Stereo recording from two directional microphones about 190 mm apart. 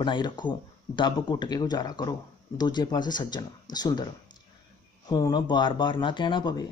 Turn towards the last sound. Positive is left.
turn(degrees=25)  # may be behind; listen again after turning